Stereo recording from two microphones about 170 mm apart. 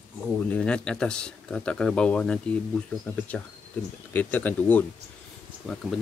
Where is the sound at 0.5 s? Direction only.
5° left (ahead or behind).